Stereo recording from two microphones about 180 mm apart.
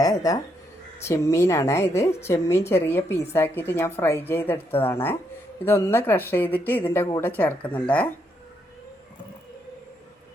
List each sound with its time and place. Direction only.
0.0 s a woman's voice: 20° left (ahead or behind)